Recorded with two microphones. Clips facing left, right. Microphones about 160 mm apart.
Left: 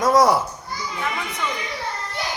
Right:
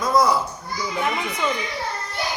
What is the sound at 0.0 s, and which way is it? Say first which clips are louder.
Children playing: left 3 dB; 80° left.